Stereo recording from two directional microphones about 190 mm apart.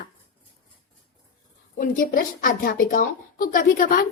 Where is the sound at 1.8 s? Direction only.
50° left (ahead or behind).